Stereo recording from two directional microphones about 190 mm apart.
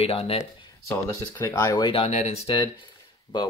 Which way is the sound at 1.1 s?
15° left (ahead or behind).